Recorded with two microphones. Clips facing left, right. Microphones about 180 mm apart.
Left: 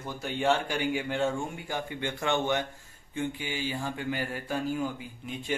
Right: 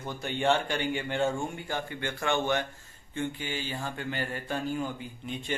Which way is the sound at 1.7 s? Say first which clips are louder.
Left 1 dB; 15° left (ahead or behind).